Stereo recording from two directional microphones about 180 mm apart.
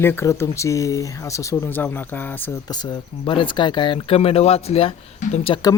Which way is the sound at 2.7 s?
25° left (ahead or behind).